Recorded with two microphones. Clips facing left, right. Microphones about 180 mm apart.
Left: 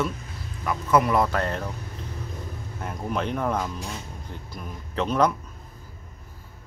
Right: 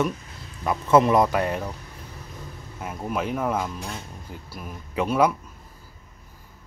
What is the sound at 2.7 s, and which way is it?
Speech, 5° right (ahead or behind).